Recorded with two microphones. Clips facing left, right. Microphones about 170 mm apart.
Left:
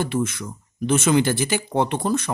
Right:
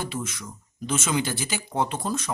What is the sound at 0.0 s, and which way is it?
A man's voice, 55° left (ahead or behind).